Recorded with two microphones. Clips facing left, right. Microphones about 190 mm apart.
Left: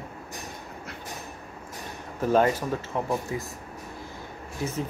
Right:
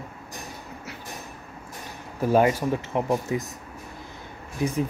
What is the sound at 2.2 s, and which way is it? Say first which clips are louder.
Speech: right 2 dB; 10° right (ahead or behind).